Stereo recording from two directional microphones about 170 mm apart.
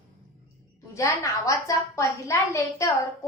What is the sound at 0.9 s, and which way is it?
A woman's voice, 20° left (ahead or behind).